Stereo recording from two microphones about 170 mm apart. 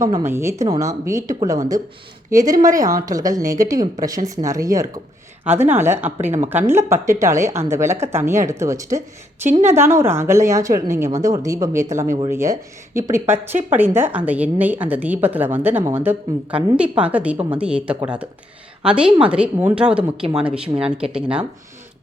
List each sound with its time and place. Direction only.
0.1 s speech: 15° right (ahead or behind)
9.0 s a woman's voice: 45° right (ahead or behind)
9.6 s speech: 15° right (ahead or behind)